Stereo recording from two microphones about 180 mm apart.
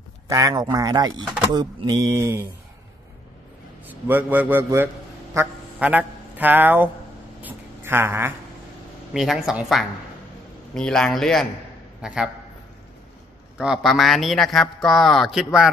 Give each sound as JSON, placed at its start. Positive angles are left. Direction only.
{"t": 0.3, "sound": "a man's voice", "side_deg": -20}
{"t": 3.8, "sound": "a man's voice", "side_deg": -10}
{"t": 7.4, "sound": "a sound", "side_deg": -10}
{"t": 9.1, "sound": "a man's voice", "side_deg": 0}
{"t": 13.6, "sound": "a man's voice", "side_deg": 0}